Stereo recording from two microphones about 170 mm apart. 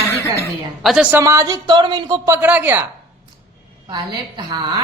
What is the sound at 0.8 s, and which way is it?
Speech, 5° right (ahead or behind).